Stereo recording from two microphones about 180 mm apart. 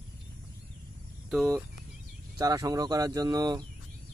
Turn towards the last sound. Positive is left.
turn(degrees=-20)  # may be behind; listen again after turning